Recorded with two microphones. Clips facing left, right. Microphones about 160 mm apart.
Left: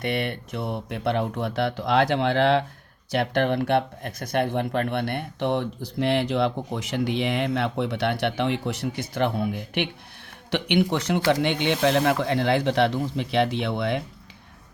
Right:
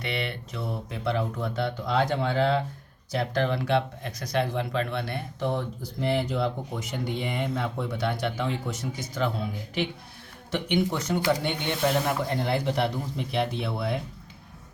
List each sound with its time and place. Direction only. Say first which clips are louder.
0.0 s speech: left 5 dB; 50° left (ahead or behind); by 2.6 s 85° left
3.1 s speech: left 4 dB; 65° left (ahead or behind)
11.3 s speech: left 6 dB; 90° left